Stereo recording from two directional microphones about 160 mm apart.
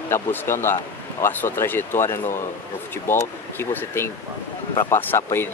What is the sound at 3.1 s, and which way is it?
Speech, 15° left (ahead or behind).